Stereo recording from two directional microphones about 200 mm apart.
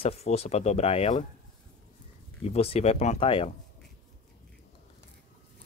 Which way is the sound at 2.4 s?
30° left (ahead or behind).